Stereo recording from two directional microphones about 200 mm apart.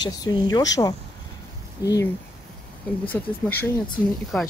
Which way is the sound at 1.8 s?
15° left (ahead or behind).